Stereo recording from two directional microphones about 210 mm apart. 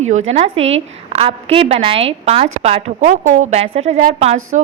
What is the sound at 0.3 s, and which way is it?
A woman's voice, 30° right (ahead or behind).